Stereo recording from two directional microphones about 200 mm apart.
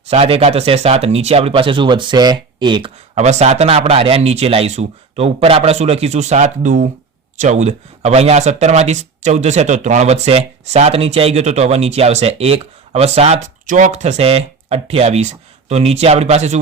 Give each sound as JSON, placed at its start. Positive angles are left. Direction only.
{"t": 0.0, "sound": "speech", "side_deg": -30}
{"t": 3.2, "sound": "speech", "side_deg": -35}